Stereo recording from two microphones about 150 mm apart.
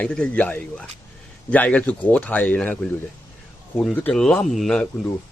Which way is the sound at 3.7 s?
5° left (ahead or behind).